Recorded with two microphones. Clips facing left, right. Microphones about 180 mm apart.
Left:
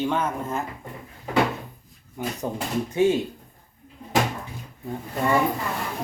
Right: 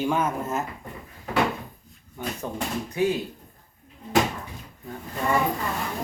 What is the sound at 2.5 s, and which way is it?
Speech, 40° left (ahead or behind).